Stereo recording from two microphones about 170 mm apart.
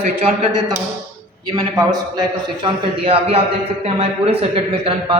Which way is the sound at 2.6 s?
35° right (ahead or behind).